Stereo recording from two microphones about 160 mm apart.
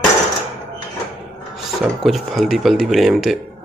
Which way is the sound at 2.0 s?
Centre (ahead or behind).